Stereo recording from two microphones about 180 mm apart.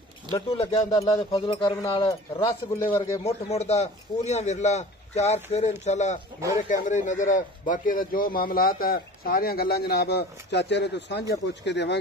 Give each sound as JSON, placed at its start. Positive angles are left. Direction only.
{"t": 0.3, "sound": "a man's voice", "side_deg": 30}
{"t": 0.7, "sound": "speech", "side_deg": 20}
{"t": 3.0, "sound": "speech", "side_deg": 20}
{"t": 3.4, "sound": "a man's voice", "side_deg": 35}